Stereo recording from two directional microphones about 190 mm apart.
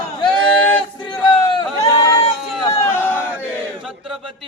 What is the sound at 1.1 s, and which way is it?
Speech, 25° left (ahead or behind).